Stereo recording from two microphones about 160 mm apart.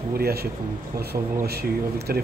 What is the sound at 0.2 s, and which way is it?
Speech, 75° right (ahead or behind).